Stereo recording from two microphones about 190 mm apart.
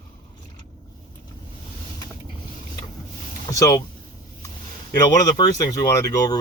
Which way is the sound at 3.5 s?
15° left (ahead or behind).